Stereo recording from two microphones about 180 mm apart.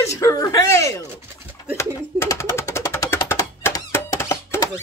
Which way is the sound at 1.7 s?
15° left (ahead or behind).